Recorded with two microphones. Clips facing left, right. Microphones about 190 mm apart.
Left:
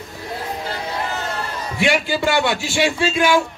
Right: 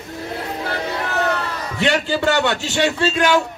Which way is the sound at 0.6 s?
65° right (ahead or behind).